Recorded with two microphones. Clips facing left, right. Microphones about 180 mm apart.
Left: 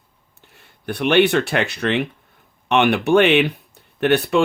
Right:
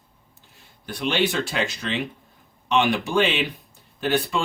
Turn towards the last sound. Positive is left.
turn(degrees=65)  # may be behind; listen again after turning